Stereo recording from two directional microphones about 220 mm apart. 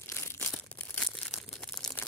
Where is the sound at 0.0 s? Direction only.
10° left (ahead or behind).